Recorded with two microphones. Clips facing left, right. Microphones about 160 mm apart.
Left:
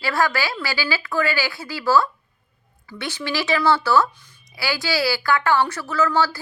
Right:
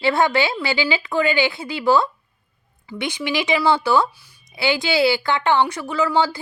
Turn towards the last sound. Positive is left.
turn(degrees=-15)  # may be behind; listen again after turning